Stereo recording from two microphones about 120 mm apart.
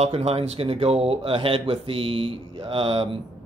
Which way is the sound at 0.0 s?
60° right (ahead or behind).